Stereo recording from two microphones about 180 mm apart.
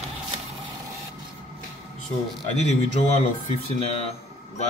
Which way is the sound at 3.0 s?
35° left (ahead or behind).